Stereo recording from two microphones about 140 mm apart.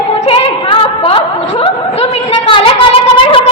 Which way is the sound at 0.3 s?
40° left (ahead or behind).